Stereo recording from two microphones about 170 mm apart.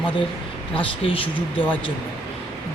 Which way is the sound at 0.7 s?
30° left (ahead or behind).